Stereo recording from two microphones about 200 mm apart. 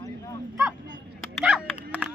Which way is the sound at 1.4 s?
Centre (ahead or behind).